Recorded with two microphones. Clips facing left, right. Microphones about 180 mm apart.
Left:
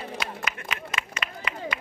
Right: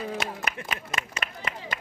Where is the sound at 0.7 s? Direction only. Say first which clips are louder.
Even; 45° right (ahead or behind).